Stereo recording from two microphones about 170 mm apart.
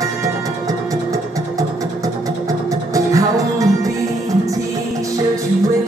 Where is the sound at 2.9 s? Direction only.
20° right (ahead or behind).